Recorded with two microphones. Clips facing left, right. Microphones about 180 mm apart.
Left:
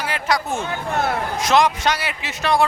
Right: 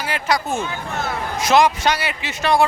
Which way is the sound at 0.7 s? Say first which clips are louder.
Left 4 dB; 55° left (ahead or behind).